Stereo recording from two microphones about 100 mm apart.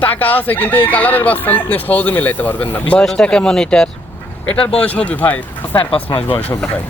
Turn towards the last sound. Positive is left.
turn(degrees=20)  # may be behind; listen again after turning